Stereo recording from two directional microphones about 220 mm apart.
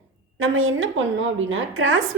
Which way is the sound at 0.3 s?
65° right (ahead or behind).